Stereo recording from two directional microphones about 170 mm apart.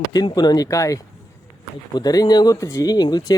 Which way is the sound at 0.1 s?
25° left (ahead or behind).